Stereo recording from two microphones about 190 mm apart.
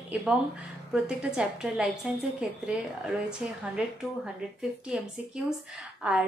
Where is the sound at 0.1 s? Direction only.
5° right (ahead or behind).